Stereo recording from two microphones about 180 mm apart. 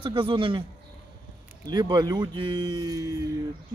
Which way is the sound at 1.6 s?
25° right (ahead or behind).